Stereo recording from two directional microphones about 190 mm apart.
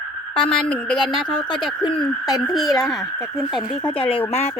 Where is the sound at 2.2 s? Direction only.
20° left (ahead or behind).